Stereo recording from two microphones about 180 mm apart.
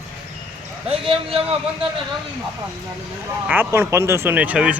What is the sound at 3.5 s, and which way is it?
Speech, 10° right (ahead or behind).